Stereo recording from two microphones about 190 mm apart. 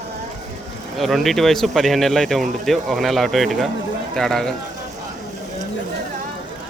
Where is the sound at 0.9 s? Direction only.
Centre (ahead or behind).